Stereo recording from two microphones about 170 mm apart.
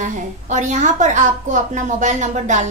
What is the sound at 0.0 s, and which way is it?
A woman's voice, 45° right (ahead or behind).